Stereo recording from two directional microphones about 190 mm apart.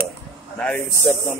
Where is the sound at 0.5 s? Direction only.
10° left (ahead or behind).